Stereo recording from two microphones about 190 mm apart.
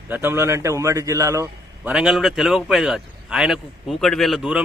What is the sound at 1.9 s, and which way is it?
A man's voice, centre (ahead or behind).